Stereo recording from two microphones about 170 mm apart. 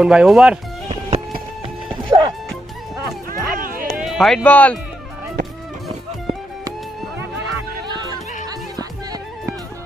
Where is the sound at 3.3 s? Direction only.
55° right (ahead or behind).